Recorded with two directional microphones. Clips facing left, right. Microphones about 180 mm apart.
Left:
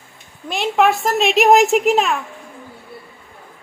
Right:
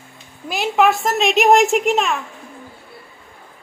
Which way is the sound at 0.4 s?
Centre (ahead or behind).